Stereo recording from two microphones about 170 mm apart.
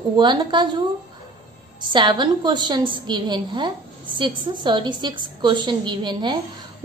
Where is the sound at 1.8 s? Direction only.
25° right (ahead or behind).